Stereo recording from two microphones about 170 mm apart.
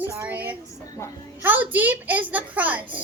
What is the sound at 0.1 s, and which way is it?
Speech, 15° right (ahead or behind).